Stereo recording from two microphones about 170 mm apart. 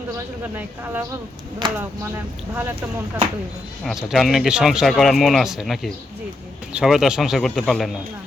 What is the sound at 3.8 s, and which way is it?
Speech, centre (ahead or behind).